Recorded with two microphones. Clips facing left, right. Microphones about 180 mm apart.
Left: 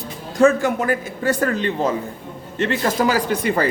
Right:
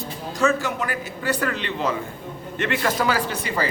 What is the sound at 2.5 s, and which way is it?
Speech, 30° left (ahead or behind).